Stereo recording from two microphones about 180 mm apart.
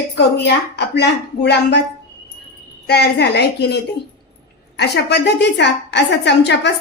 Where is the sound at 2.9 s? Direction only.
70° left (ahead or behind).